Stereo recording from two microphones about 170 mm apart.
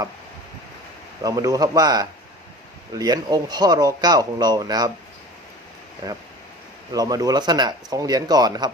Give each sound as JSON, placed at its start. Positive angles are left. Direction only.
{"t": 1.2, "sound": "speech", "side_deg": -20}
{"t": 6.0, "sound": "speech", "side_deg": -20}